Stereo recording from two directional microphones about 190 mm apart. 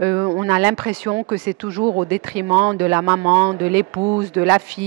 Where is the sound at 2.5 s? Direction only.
15° right (ahead or behind).